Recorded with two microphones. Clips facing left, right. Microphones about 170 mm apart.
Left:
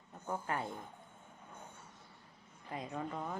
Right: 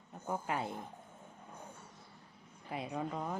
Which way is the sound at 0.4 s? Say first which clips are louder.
Right 1 dB; 15° right (ahead or behind).